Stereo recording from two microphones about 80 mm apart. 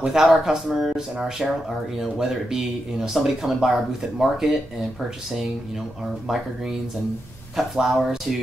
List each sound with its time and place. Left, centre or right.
0.0 s speech: centre
7.5 s speech: centre